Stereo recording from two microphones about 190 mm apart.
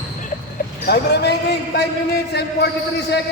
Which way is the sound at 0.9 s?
60° left (ahead or behind).